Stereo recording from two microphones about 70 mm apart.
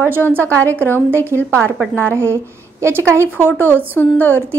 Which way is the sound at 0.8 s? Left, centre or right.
Right.